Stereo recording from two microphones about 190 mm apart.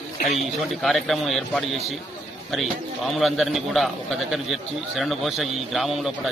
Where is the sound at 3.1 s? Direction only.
Centre (ahead or behind).